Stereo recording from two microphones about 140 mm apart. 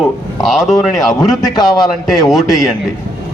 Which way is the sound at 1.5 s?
30° left (ahead or behind).